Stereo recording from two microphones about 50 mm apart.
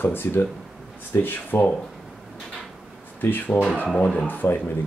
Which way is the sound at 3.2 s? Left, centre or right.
Left.